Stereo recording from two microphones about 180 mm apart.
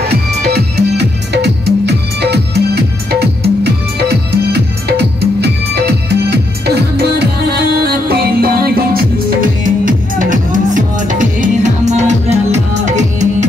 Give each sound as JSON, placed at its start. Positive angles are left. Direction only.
{"t": 0.0, "sound": "music", "side_deg": -65}